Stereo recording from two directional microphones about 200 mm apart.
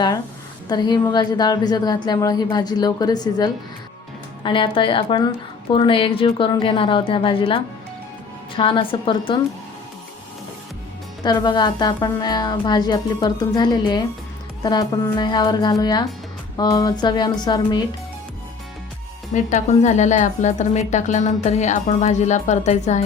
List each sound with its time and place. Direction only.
0.7 s a woman's voice: 20° left (ahead or behind)
11.2 s a woman's voice: 20° left (ahead or behind)
19.3 s speech: 35° left (ahead or behind)